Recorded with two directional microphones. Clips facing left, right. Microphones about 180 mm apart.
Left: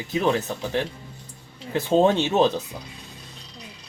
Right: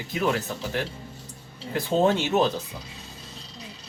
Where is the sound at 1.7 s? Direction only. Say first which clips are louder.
Left 3 dB; 20° left (ahead or behind).